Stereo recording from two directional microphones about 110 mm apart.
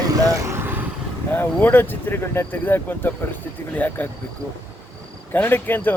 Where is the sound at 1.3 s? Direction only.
15° left (ahead or behind).